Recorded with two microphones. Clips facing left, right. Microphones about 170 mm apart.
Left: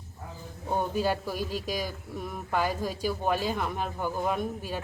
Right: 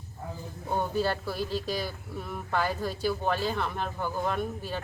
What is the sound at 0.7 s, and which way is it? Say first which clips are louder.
Speech: left 1 dB; 10° left (ahead or behind).